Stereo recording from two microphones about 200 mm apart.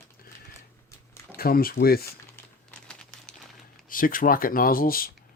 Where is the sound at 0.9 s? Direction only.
15° left (ahead or behind).